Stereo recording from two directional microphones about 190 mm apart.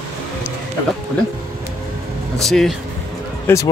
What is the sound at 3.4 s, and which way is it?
Speech, 15° left (ahead or behind).